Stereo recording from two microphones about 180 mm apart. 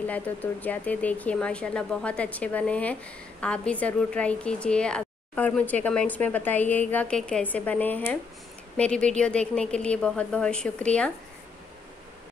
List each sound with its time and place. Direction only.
0.0 s a woman's voice: 10° left (ahead or behind)